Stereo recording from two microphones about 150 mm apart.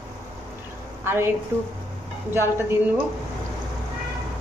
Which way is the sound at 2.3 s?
15° right (ahead or behind).